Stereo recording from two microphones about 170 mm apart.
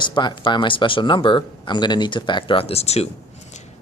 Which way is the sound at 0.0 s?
25° left (ahead or behind).